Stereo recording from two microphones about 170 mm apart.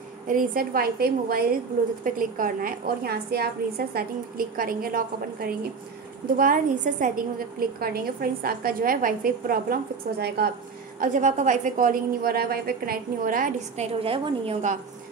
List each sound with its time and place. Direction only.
0.3 s a woman's voice: 55° right (ahead or behind)
11.0 s a woman's voice: 45° right (ahead or behind)
13.9 s a woman's voice: 30° right (ahead or behind)